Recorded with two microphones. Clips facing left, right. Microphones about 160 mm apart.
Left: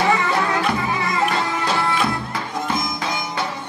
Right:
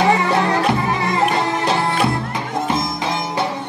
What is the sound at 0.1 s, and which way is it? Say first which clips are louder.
Music: right 3 dB; 30° right (ahead or behind).